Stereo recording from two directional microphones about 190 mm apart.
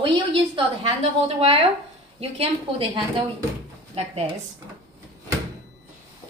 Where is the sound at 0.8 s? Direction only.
30° right (ahead or behind).